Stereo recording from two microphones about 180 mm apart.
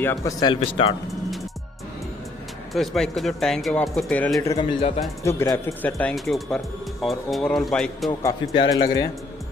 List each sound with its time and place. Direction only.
0.0 s speech: 15° left (ahead or behind)
0.6 s speech: 35° left (ahead or behind)
2.7 s speech: centre (ahead or behind)
4.6 s speech: 30° left (ahead or behind)
5.2 s speech: 15° left (ahead or behind)
8.1 s a man's voice: 20° left (ahead or behind)